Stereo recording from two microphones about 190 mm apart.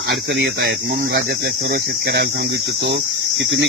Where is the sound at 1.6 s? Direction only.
50° right (ahead or behind).